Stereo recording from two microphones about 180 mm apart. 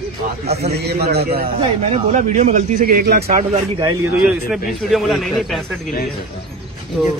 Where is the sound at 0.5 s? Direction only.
60° right (ahead or behind).